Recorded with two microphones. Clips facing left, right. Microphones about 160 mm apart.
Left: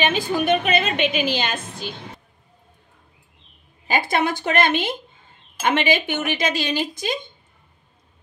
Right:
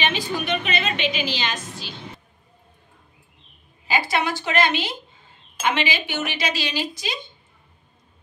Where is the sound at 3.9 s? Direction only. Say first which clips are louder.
Left 2 dB; 50° left (ahead or behind).